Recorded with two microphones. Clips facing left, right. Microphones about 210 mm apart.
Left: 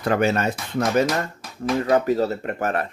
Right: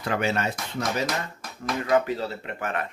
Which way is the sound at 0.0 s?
45° left (ahead or behind).